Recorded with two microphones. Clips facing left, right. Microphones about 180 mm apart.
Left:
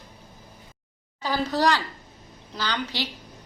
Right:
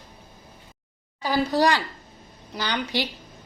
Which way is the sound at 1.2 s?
10° right (ahead or behind).